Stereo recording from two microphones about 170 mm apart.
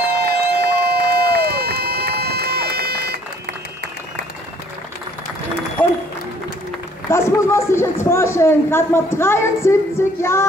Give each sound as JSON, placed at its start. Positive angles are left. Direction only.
{"t": 0.2, "sound": "run", "side_deg": -70}
{"t": 5.8, "sound": "applause", "side_deg": 10}
{"t": 7.1, "sound": "a man's voice", "side_deg": 15}